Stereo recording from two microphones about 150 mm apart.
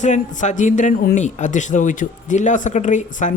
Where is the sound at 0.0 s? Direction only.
55° left (ahead or behind).